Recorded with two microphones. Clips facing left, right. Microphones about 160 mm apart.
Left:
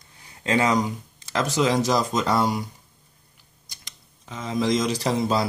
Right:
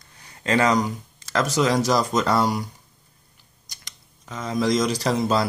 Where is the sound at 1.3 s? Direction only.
20° left (ahead or behind).